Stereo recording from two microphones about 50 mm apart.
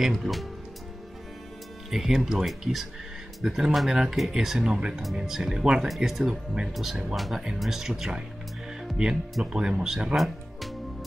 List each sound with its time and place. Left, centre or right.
0.2 s speech: centre
1.9 s speech: centre
10.1 s music: centre